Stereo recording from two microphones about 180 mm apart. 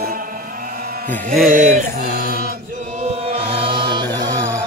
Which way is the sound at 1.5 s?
45° right (ahead or behind).